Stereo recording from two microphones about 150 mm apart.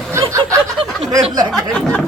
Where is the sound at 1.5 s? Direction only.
5° left (ahead or behind).